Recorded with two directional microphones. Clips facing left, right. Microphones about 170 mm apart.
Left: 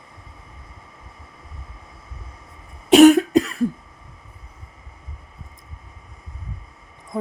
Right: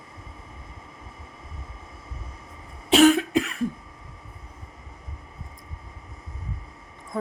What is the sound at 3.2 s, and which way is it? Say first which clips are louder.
Cough: left 7 dB; 40° left (ahead or behind).